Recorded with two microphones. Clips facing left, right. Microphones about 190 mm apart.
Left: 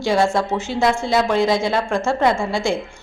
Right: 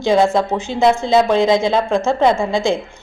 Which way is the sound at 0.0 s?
20° right (ahead or behind).